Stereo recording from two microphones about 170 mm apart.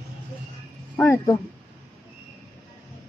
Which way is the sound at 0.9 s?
10° left (ahead or behind).